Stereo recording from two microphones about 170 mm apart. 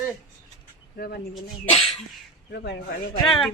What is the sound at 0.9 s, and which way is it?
Speech, 65° left (ahead or behind).